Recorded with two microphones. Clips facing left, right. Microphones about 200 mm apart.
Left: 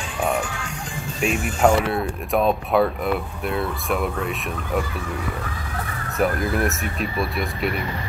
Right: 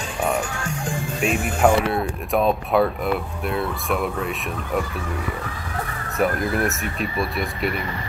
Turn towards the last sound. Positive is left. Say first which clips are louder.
# even
turn(degrees=0)  # may be behind; listen again after turning